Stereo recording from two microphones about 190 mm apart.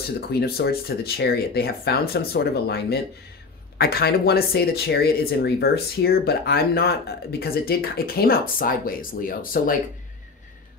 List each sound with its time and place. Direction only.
0.3 s speech: 55° left (ahead or behind)